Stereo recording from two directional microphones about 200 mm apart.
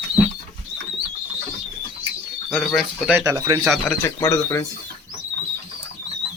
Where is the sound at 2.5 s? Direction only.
Centre (ahead or behind).